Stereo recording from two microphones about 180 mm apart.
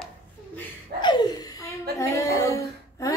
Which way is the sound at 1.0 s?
25° left (ahead or behind).